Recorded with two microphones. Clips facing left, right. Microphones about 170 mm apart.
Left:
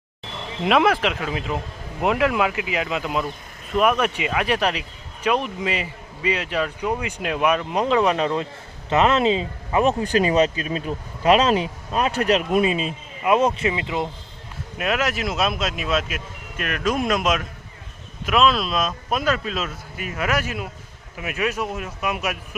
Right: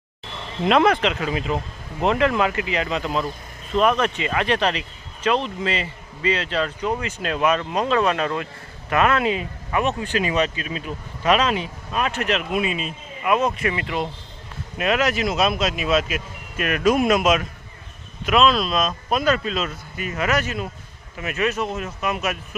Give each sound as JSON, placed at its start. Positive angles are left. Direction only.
{"t": 0.6, "sound": "speech", "side_deg": 5}
{"t": 10.0, "sound": "speech", "side_deg": 40}
{"t": 14.8, "sound": "speech", "side_deg": 5}